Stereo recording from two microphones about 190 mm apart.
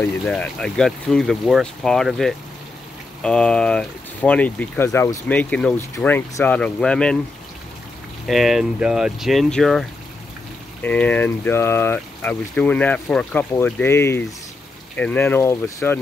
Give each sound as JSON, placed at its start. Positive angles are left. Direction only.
{"t": 0.0, "sound": "speech", "side_deg": 5}
{"t": 8.3, "sound": "speech", "side_deg": 0}